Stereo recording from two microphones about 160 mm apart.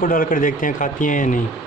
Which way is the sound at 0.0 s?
60° left (ahead or behind).